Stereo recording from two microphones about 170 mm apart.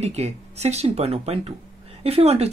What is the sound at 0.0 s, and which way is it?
Speech, 40° right (ahead or behind).